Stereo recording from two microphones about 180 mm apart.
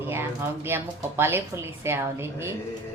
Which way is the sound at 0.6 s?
10° right (ahead or behind).